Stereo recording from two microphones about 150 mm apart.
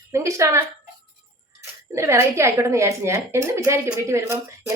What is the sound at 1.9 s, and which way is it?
A woman's voice, 20° right (ahead or behind).